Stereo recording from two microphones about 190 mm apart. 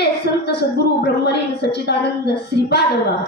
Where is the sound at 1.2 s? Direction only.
60° left (ahead or behind).